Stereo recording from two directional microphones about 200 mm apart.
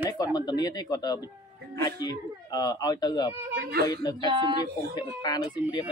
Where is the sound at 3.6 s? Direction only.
50° right (ahead or behind).